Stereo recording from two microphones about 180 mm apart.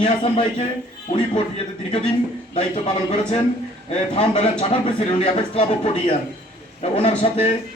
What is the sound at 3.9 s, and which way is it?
A man's voice, 35° left (ahead or behind).